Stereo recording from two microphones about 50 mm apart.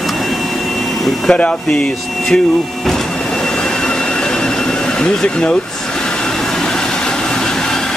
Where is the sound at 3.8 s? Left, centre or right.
Centre.